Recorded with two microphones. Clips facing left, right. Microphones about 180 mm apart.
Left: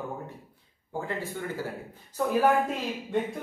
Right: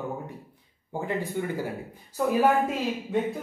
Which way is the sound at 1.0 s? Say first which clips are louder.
Right 6 dB; 15° right (ahead or behind).